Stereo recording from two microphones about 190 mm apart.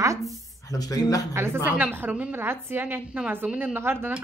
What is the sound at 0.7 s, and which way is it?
Speech, 20° left (ahead or behind).